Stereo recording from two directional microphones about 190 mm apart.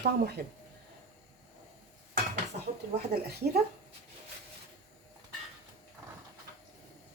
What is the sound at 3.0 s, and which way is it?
Speech, 55° right (ahead or behind).